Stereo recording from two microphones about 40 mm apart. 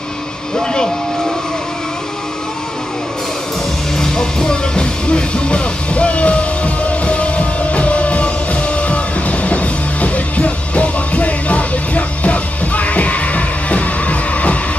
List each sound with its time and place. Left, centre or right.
4.0 s music: centre; by 14.6 s left